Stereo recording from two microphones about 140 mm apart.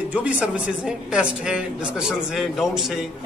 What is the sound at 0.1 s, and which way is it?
A woman's voice, 10° right (ahead or behind).